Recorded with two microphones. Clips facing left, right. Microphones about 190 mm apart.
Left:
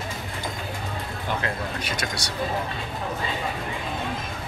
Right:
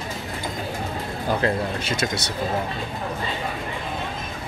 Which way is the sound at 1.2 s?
30° right (ahead or behind).